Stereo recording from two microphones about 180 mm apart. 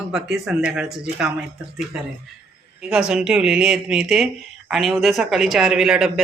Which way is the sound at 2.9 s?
5° right (ahead or behind).